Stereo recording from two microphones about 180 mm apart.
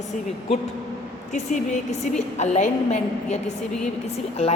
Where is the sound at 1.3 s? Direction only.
40° left (ahead or behind).